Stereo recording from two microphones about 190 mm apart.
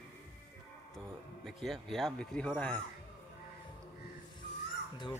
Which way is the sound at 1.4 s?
Centre (ahead or behind).